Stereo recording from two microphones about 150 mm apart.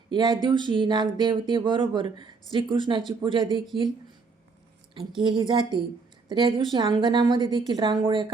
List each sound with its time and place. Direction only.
0.1 s speech: 30° right (ahead or behind)
5.2 s speech: 30° right (ahead or behind)